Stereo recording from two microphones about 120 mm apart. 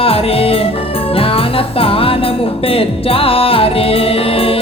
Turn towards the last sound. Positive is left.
turn(degrees=50)  # may be behind; listen again after turning